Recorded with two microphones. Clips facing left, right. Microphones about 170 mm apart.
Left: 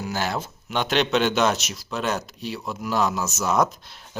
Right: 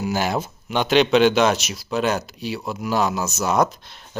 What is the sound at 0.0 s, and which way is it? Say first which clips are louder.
Speech: right 4 dB; 15° right (ahead or behind).